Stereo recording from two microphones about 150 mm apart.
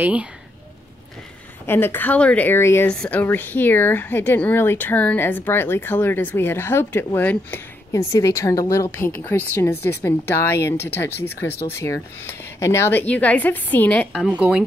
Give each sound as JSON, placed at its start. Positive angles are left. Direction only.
{"t": 0.0, "sound": "speech", "side_deg": -10}
{"t": 1.7, "sound": "speech", "side_deg": 15}